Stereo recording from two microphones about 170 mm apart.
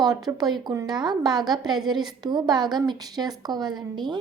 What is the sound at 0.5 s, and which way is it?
A woman's voice, 20° right (ahead or behind).